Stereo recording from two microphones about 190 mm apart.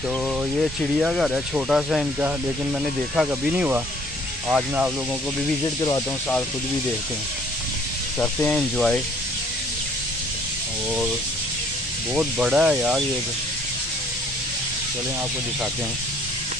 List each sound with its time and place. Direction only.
0.6 s speech: centre (ahead or behind)
5.8 s speech: 20° left (ahead or behind)
8.2 s speech: 5° left (ahead or behind)
12.1 s speech: 5° right (ahead or behind)